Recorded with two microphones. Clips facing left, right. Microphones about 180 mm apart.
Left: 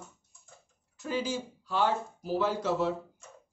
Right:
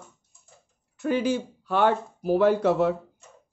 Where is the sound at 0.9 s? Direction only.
60° right (ahead or behind).